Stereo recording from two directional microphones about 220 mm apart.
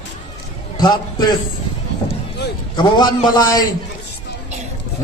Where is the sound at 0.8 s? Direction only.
20° left (ahead or behind).